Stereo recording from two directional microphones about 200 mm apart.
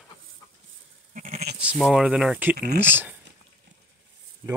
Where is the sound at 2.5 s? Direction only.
55° right (ahead or behind).